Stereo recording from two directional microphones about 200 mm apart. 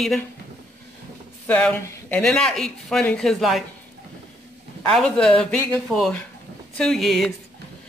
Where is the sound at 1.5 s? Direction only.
10° left (ahead or behind).